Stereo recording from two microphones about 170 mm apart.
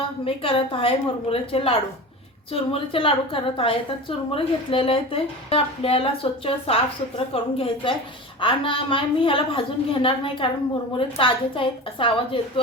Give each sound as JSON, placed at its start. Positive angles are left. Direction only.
{"t": 0.3, "sound": "a woman's voice", "side_deg": 35}